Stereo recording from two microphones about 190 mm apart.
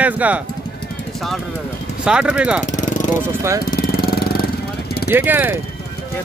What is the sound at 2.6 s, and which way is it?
Music, 40° left (ahead or behind).